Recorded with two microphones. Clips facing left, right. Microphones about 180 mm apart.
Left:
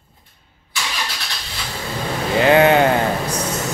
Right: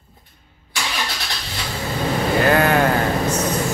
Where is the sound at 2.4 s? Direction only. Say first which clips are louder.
Left 5 dB; 20° left (ahead or behind).